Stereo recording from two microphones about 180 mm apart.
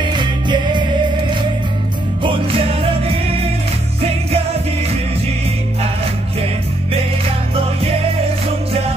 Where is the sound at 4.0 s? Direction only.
35° right (ahead or behind).